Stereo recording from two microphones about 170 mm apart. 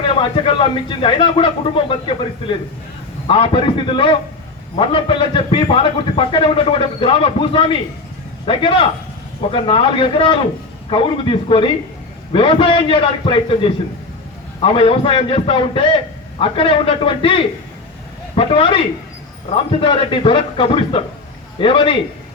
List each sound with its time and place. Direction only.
0.0 s a man's voice: 30° left (ahead or behind)
3.2 s a man's voice: 30° left (ahead or behind)